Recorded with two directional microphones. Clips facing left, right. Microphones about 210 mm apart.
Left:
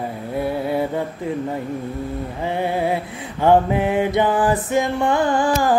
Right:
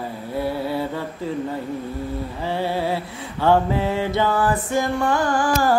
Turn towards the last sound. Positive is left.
turn(degrees=20)  # may be behind; listen again after turning